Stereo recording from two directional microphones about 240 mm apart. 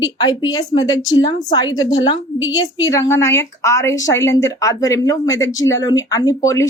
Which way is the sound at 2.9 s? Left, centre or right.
Centre.